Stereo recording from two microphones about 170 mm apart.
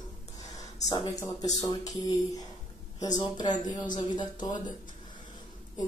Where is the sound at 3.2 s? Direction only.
25° left (ahead or behind).